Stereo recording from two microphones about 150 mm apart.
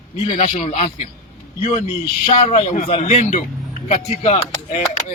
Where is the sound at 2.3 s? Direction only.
50° left (ahead or behind).